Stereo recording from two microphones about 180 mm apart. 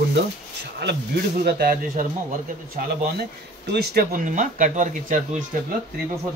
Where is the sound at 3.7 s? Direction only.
65° right (ahead or behind); by 5.4 s 45° right (ahead or behind).